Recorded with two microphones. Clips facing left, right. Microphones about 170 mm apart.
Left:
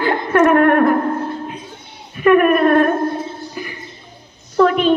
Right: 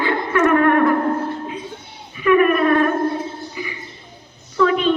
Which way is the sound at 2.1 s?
55° left (ahead or behind).